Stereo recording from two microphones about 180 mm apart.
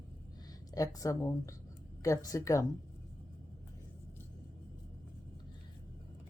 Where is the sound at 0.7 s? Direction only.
20° left (ahead or behind).